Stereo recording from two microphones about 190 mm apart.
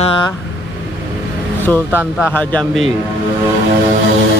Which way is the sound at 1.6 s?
10° left (ahead or behind).